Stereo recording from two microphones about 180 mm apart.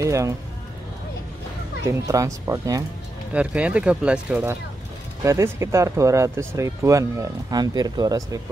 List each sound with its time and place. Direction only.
0.0 s speech: 15° right (ahead or behind)
1.9 s speech: 15° right (ahead or behind)
3.3 s speech: 5° right (ahead or behind)